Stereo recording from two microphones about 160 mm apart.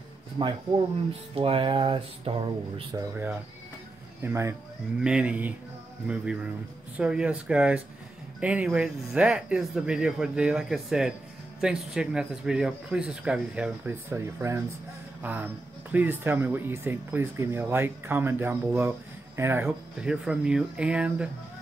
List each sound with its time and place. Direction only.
0.4 s speech: 35° right (ahead or behind)
2.9 s speech: 20° right (ahead or behind)
4.2 s speech: 15° right (ahead or behind)
20.0 s speech: 5° right (ahead or behind)